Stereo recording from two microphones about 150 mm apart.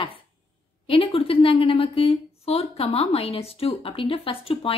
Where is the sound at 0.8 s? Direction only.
40° left (ahead or behind).